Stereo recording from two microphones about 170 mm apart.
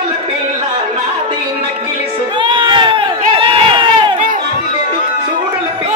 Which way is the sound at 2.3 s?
30° right (ahead or behind).